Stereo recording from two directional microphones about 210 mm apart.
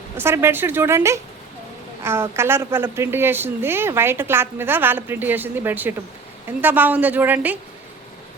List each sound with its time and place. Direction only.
0.2 s a woman's voice: 10° right (ahead or behind)